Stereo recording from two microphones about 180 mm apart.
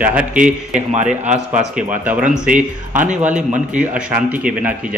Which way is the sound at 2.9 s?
40° right (ahead or behind).